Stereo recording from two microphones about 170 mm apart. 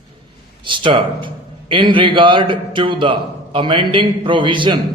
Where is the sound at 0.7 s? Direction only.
30° right (ahead or behind).